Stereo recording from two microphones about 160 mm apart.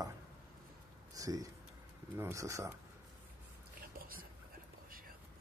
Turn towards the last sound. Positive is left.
turn(degrees=-65)  # may be behind; listen again after turning